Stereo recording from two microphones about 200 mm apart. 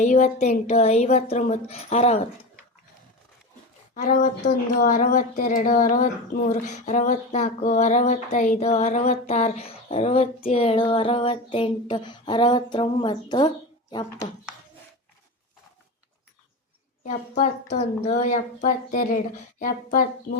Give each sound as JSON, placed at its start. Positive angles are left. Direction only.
{"t": 0.0, "sound": "speech", "side_deg": 35}
{"t": 3.9, "sound": "speech", "side_deg": 40}
{"t": 17.0, "sound": "speech", "side_deg": 40}